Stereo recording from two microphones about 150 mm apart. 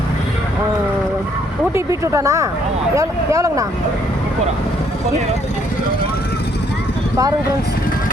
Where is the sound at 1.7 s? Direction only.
20° right (ahead or behind).